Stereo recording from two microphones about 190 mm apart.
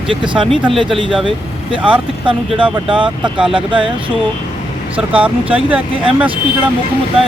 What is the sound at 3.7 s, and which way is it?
Speech, 25° right (ahead or behind).